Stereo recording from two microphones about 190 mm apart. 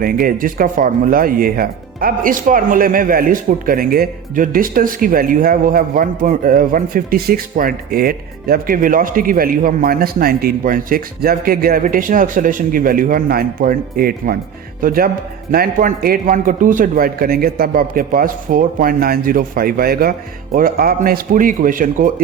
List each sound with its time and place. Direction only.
0.0 s speech: 50° right (ahead or behind)